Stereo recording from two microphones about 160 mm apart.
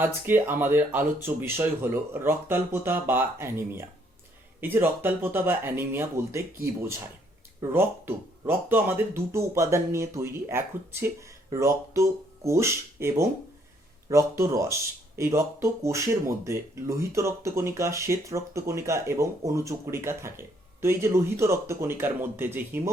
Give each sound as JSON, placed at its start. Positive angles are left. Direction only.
{"t": 0.0, "sound": "speech", "side_deg": -15}